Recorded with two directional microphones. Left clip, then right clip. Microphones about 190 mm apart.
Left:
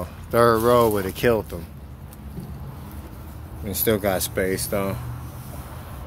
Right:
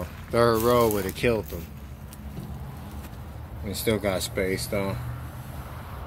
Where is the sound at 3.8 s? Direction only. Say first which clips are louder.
Left 4 dB; 5° left (ahead or behind).